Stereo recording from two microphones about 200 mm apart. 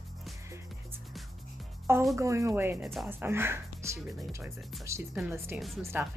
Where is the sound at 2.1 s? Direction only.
15° right (ahead or behind).